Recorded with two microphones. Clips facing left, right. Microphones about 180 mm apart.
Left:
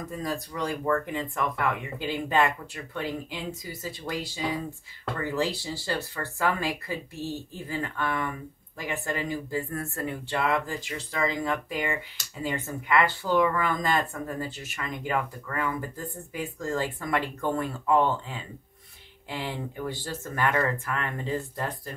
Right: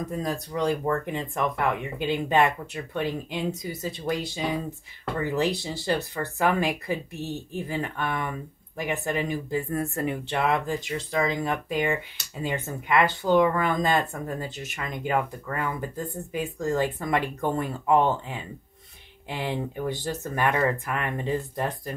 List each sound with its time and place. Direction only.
0.2 s speech: 20° right (ahead or behind)